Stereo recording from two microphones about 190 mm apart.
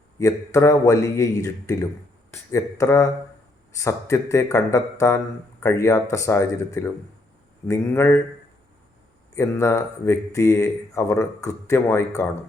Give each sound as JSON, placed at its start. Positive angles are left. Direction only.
{"t": 0.2, "sound": "speech", "side_deg": 15}
{"t": 9.3, "sound": "speech", "side_deg": 15}